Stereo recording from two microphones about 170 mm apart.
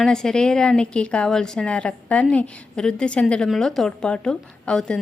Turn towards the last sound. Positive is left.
turn(degrees=5)  # may be behind; listen again after turning